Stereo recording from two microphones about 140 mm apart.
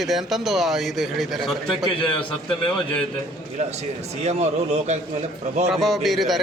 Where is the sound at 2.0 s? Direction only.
40° left (ahead or behind).